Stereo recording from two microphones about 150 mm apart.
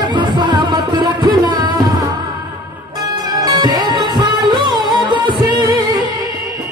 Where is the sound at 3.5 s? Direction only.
30° right (ahead or behind).